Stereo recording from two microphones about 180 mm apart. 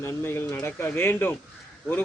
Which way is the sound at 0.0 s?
15° left (ahead or behind).